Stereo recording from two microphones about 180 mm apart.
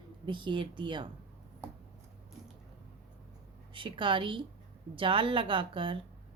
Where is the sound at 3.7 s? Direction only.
30° right (ahead or behind).